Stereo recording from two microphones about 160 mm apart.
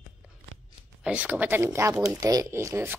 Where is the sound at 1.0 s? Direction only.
5° right (ahead or behind).